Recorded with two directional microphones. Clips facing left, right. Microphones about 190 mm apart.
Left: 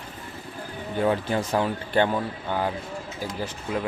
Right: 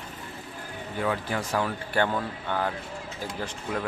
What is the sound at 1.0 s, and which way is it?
Speech, 25° left (ahead or behind).